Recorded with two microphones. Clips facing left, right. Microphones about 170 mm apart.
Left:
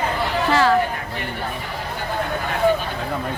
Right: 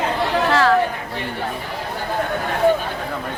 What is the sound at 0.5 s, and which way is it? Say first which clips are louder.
Speech: even; centre (ahead or behind).